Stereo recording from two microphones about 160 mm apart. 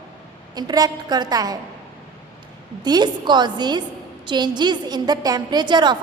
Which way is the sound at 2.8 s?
25° right (ahead or behind).